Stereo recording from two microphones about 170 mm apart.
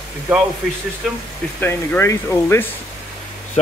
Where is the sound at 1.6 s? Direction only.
10° left (ahead or behind).